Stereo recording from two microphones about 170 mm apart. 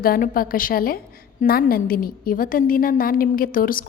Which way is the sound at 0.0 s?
60° left (ahead or behind).